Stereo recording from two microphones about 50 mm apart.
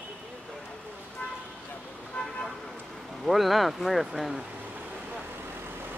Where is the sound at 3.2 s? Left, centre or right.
Centre.